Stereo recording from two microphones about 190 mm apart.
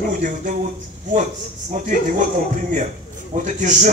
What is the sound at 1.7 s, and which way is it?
Speech, 45° right (ahead or behind).